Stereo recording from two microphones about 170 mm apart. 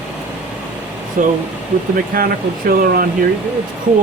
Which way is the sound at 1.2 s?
50° right (ahead or behind).